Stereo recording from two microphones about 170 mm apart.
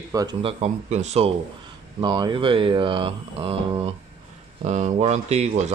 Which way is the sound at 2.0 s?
25° right (ahead or behind).